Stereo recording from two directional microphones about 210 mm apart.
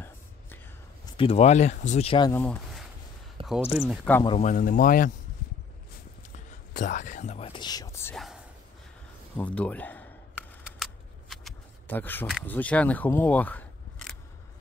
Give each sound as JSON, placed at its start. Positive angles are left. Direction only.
{"t": 1.1, "sound": "speech", "side_deg": 30}
{"t": 2.3, "sound": "speech", "side_deg": 5}
{"t": 3.4, "sound": "a sound", "side_deg": -25}
{"t": 3.7, "sound": "speech", "side_deg": 0}
{"t": 4.2, "sound": "speech", "side_deg": 25}
{"t": 4.5, "sound": "speech", "side_deg": 40}
{"t": 6.3, "sound": "speech", "side_deg": 40}
{"t": 9.4, "sound": "speech", "side_deg": 5}
{"t": 10.8, "sound": "shuffling cards", "side_deg": 0}
{"t": 12.4, "sound": "speech", "side_deg": 5}